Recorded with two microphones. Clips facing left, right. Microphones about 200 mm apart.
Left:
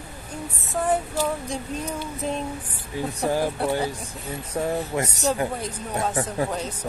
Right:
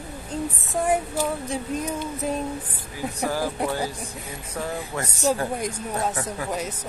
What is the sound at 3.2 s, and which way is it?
Speech, 20° left (ahead or behind).